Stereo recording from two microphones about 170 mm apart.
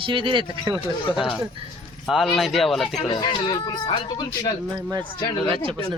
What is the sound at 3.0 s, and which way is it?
Speech, 30° left (ahead or behind).